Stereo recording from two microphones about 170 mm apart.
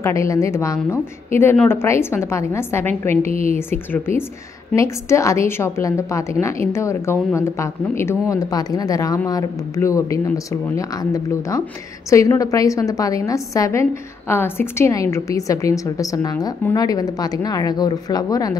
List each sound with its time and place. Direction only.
0.0 s a woman's voice: 15° left (ahead or behind)